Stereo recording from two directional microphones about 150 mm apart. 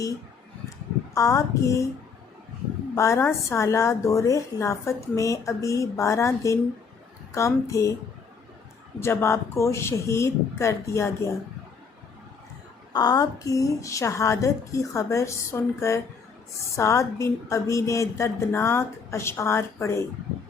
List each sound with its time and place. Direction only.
1.1 s a woman's voice: 20° left (ahead or behind)
2.9 s a woman's voice: 20° left (ahead or behind)
9.0 s speech: 15° left (ahead or behind)
12.9 s a woman's voice: 25° left (ahead or behind)